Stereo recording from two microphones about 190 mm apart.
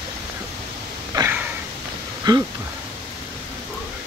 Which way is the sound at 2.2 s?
20° right (ahead or behind).